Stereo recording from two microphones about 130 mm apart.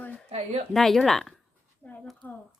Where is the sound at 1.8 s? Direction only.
10° left (ahead or behind).